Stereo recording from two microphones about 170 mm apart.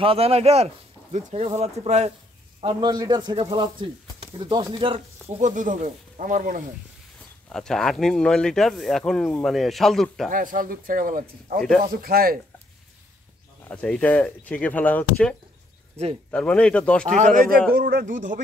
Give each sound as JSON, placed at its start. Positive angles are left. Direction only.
{"t": 0.0, "sound": "speech", "side_deg": -35}
{"t": 2.6, "sound": "a man's voice", "side_deg": -25}
{"t": 5.5, "sound": "speech", "side_deg": -50}
{"t": 7.5, "sound": "speech", "side_deg": 5}
{"t": 10.3, "sound": "speech", "side_deg": -55}
{"t": 13.7, "sound": "speech", "side_deg": 5}
{"t": 17.1, "sound": "speech", "side_deg": -50}